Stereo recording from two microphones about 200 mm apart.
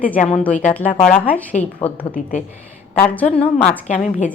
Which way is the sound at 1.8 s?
25° left (ahead or behind).